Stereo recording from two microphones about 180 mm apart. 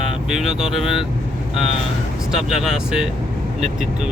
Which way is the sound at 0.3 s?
5° right (ahead or behind).